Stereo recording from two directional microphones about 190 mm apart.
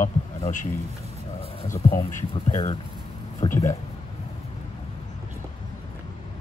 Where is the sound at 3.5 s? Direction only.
15° left (ahead or behind).